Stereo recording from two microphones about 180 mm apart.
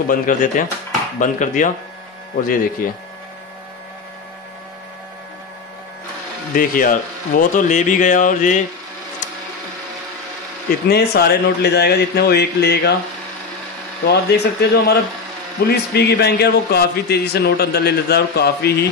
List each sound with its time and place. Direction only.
0.1 s speech: 50° left (ahead or behind)
6.5 s speech: 50° left (ahead or behind)
10.9 s speech: 60° left (ahead or behind)
14.0 s speech: 65° left (ahead or behind)